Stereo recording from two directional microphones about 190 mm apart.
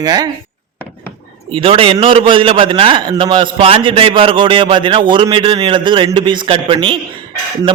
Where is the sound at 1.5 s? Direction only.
30° right (ahead or behind).